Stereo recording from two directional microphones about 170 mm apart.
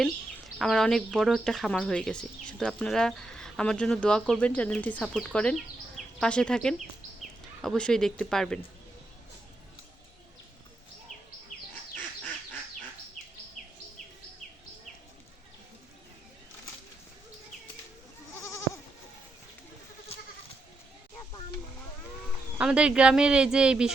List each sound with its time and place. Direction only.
0.6 s speech: centre (ahead or behind)
13.6 s insect: centre (ahead or behind)
22.5 s speech: 5° right (ahead or behind)